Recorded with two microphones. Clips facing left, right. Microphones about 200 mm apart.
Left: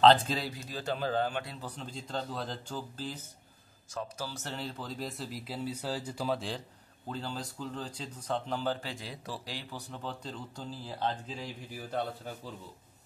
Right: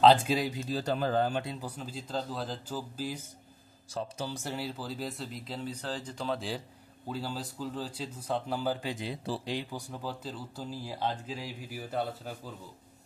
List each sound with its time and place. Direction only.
0.0 s speech: 10° right (ahead or behind)
0.7 s a man's voice: 35° right (ahead or behind)
0.9 s a man's voice: 45° right (ahead or behind)
1.4 s speech: 15° right (ahead or behind)
4.3 s speech: 10° right (ahead or behind)
9.2 s speech: 30° right (ahead or behind)
9.6 s speech: 15° right (ahead or behind)